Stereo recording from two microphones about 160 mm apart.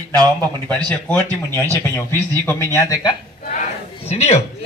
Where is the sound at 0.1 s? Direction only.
25° right (ahead or behind).